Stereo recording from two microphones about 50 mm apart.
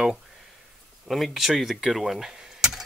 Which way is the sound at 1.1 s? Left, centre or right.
Centre.